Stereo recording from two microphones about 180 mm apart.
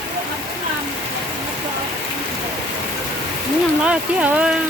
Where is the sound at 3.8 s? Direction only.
5° right (ahead or behind).